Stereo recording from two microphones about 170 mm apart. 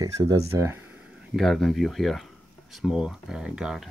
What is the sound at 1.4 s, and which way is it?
Speech, centre (ahead or behind).